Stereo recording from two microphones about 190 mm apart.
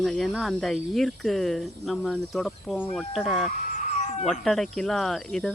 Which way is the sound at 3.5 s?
40° left (ahead or behind).